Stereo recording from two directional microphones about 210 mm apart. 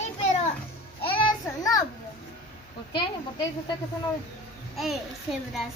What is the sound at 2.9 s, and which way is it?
Speech, 25° left (ahead or behind).